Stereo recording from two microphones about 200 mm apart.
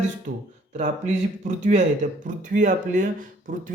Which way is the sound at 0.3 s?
40° right (ahead or behind).